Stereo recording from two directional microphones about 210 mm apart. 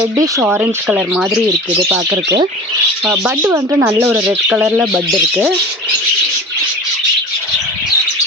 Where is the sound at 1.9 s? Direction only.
15° right (ahead or behind).